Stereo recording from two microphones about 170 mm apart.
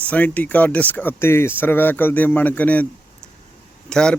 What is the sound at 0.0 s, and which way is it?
Speech, 10° left (ahead or behind).